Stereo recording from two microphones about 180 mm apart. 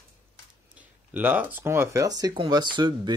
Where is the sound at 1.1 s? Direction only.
10° right (ahead or behind).